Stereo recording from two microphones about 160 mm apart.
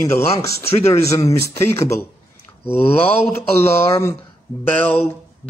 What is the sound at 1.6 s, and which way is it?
Speech, 15° left (ahead or behind).